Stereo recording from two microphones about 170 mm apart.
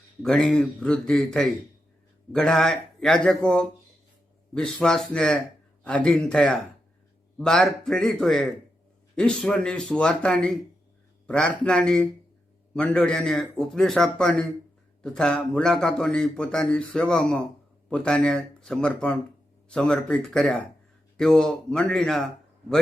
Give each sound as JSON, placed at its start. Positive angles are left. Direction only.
{"t": 0.2, "sound": "a man's voice", "side_deg": 5}